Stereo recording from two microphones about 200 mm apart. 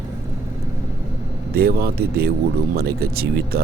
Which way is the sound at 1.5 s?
50° right (ahead or behind).